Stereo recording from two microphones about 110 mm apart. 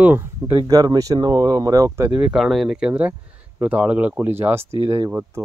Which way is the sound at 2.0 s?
15° right (ahead or behind).